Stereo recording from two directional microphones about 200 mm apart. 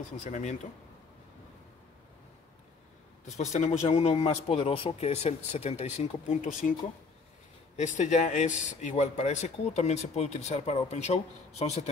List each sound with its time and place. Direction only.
0.2 s speech: 35° left (ahead or behind)
3.3 s speech: 35° left (ahead or behind)
7.7 s speech: 35° left (ahead or behind)